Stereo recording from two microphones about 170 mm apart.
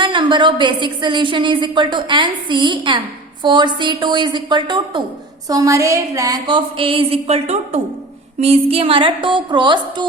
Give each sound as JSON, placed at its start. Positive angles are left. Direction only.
{"t": 0.0, "sound": "a woman's voice", "side_deg": -30}